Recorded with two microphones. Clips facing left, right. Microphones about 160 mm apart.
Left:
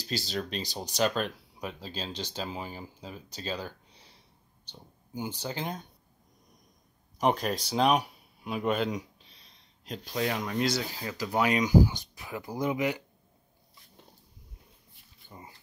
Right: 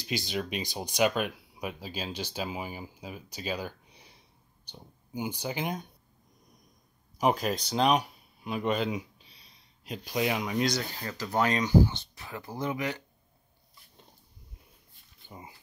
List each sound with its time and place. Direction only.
0.0 s speech: 15° right (ahead or behind)
7.2 s speech: 5° right (ahead or behind)
10.6 s speech: 5° left (ahead or behind)
15.2 s speech: 15° right (ahead or behind)